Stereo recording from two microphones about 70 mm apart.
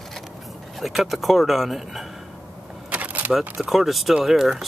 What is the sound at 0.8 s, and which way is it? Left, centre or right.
Speech, centre.